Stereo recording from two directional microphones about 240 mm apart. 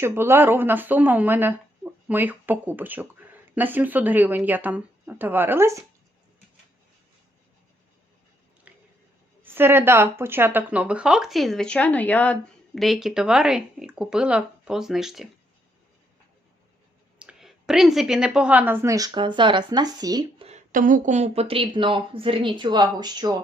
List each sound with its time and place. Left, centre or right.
0.0 s speech: centre
8.7 s a sound: centre
9.4 s speech: centre
17.2 s a woman's voice: centre
20.5 s speech: right; by 23.3 s centre